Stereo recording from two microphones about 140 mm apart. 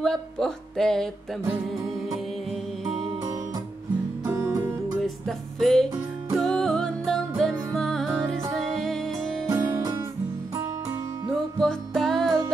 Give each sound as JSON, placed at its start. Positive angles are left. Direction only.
{"t": 0.0, "sound": "speech", "side_deg": 5}
{"t": 4.3, "sound": "music", "side_deg": -20}
{"t": 5.6, "sound": "speech", "side_deg": 0}
{"t": 6.3, "sound": "music", "side_deg": 0}
{"t": 9.5, "sound": "music", "side_deg": -25}
{"t": 11.6, "sound": "music", "side_deg": 5}